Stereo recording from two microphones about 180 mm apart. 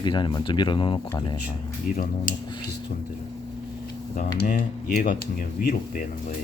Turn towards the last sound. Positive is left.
turn(degrees=50)  # may be behind; listen again after turning